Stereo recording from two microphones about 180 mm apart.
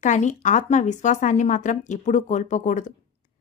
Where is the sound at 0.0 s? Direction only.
45° left (ahead or behind).